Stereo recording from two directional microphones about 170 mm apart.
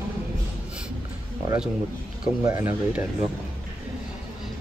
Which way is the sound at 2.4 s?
20° right (ahead or behind).